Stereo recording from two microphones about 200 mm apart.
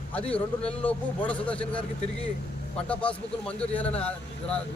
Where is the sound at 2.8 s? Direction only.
5° left (ahead or behind).